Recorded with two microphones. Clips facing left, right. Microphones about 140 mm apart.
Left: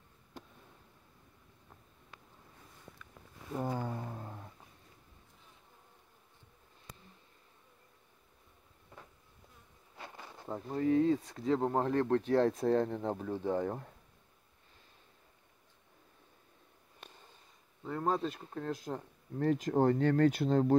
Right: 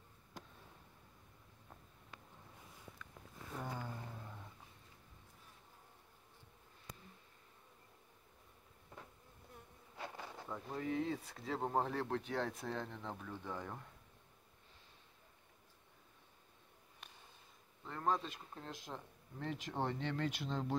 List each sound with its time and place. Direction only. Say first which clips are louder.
3.5 s a sound: left 9 dB; 45° left (ahead or behind)
10.5 s speech: left 11 dB; 40° left (ahead or behind)
17.8 s speech: left 5 dB; 5° left (ahead or behind)
18.1 s speech: left 6 dB; 35° left (ahead or behind)
18.5 s speech: left 11 dB; 45° left (ahead or behind)